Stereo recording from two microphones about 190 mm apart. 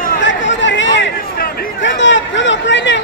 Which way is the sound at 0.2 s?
75° left (ahead or behind).